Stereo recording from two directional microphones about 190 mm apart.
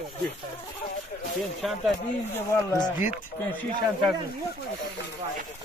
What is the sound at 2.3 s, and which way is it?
Speech, 15° left (ahead or behind).